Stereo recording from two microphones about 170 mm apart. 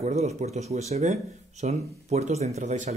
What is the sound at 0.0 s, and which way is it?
Speech, 40° right (ahead or behind).